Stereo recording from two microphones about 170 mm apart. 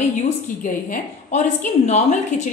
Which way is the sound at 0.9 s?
45° left (ahead or behind).